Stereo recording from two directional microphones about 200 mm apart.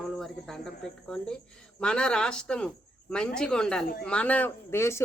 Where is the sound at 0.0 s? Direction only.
Centre (ahead or behind).